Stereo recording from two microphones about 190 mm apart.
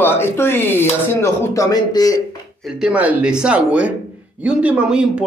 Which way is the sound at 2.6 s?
5° right (ahead or behind).